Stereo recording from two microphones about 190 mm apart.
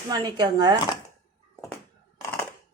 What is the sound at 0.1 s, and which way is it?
Speech, 20° right (ahead or behind).